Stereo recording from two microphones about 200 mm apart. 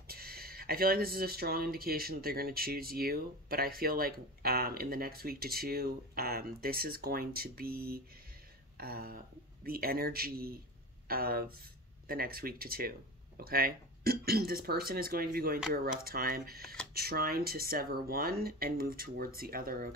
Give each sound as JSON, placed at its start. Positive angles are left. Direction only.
{"t": 0.0, "sound": "speech", "side_deg": -50}